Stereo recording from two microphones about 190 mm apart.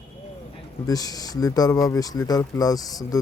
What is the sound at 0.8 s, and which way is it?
Speech, 20° left (ahead or behind).